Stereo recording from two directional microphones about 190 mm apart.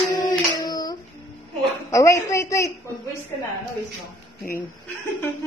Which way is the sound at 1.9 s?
15° left (ahead or behind).